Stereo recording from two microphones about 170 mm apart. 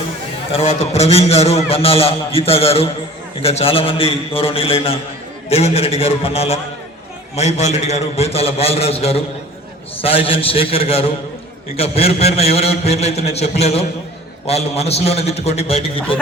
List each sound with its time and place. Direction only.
0.5 s a man's voice: 40° left (ahead or behind)